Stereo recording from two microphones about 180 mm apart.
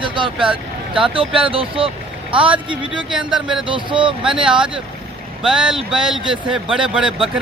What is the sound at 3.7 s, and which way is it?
Speech, 30° right (ahead or behind).